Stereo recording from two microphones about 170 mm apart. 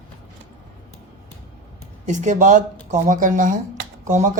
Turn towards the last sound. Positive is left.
turn(degrees=-45)  # may be behind; listen again after turning